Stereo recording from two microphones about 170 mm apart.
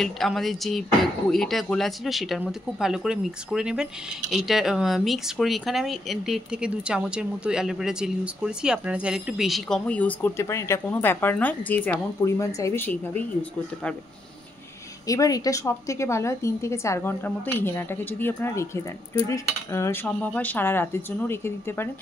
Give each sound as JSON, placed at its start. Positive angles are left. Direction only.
{"t": 0.0, "sound": "a woman's voice", "side_deg": 0}
{"t": 15.0, "sound": "a woman's voice", "side_deg": 20}